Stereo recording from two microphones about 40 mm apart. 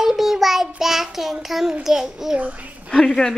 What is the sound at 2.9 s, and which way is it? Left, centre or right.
Speech, centre.